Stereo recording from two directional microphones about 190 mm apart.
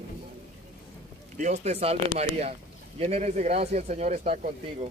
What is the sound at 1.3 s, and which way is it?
Speech, 40° right (ahead or behind).